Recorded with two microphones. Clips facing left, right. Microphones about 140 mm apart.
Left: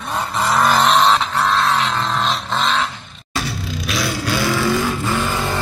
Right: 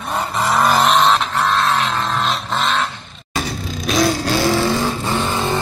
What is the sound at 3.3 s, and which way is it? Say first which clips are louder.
Vehicle: right 1 dB; 45° right (ahead or behind).